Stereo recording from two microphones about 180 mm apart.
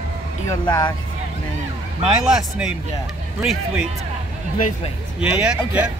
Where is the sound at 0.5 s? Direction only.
20° left (ahead or behind).